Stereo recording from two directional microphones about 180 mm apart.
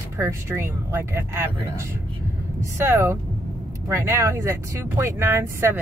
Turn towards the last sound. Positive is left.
turn(degrees=-15)  # may be behind; listen again after turning